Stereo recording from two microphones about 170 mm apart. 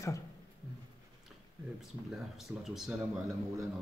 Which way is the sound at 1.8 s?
Centre (ahead or behind).